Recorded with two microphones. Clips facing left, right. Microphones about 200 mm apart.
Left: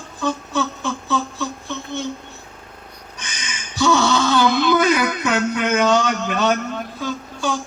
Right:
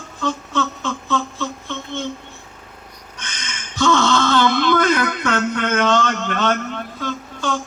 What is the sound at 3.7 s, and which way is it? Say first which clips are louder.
Wail: even; 10° left (ahead or behind).